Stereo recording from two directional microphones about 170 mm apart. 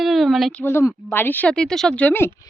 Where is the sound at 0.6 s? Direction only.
15° left (ahead or behind).